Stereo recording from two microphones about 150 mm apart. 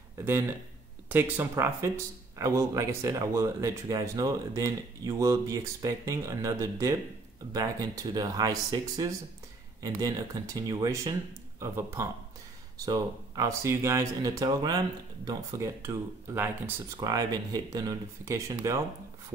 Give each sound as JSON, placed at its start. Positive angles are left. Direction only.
{"t": 0.2, "sound": "speech", "side_deg": -15}
{"t": 17.0, "sound": "speech", "side_deg": -25}